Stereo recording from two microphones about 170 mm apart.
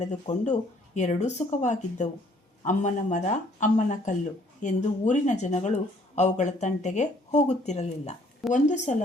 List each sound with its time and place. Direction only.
0.0 s speech: 45° left (ahead or behind)